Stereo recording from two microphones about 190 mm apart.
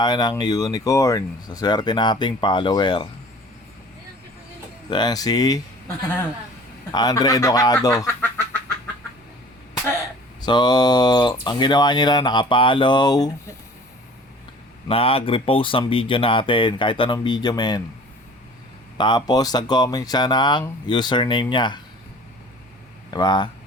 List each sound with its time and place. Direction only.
0.0 s speech: 20° left (ahead or behind)
4.9 s speech: 20° left (ahead or behind)
6.9 s speech: 20° left (ahead or behind)
10.4 s speech: 20° left (ahead or behind)
14.8 s speech: 30° left (ahead or behind)
18.9 s speech: 25° left (ahead or behind)
23.1 s speech: 20° left (ahead or behind)